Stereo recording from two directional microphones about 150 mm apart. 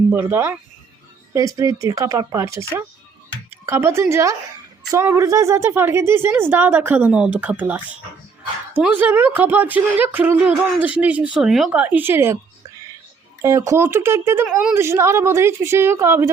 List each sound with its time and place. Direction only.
0.1 s a woman's voice: 15° right (ahead or behind)
13.4 s a woman's voice: 20° right (ahead or behind)